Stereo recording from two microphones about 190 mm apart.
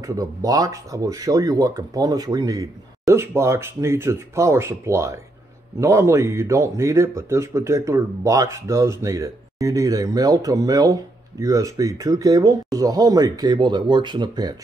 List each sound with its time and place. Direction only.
0.0 s speech: 20° right (ahead or behind)